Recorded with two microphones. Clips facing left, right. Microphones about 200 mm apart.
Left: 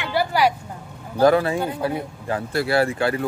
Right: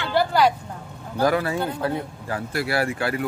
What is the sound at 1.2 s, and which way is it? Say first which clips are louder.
Speech: left 5 dB; 30° left (ahead or behind).